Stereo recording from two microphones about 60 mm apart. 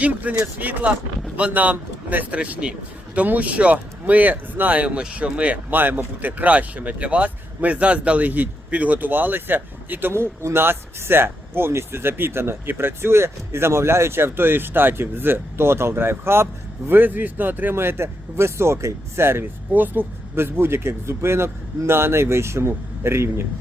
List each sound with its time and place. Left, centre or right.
0.0 s speech: right
5.7 s speech: right